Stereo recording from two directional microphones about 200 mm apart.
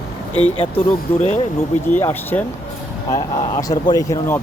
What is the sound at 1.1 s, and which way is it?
Speech, 10° left (ahead or behind).